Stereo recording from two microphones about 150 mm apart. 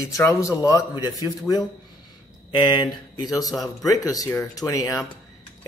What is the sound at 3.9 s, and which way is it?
Speech, 25° left (ahead or behind).